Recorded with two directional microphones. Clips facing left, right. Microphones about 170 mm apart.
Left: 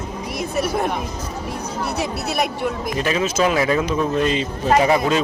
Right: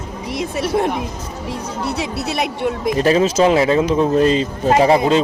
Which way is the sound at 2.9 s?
35° right (ahead or behind).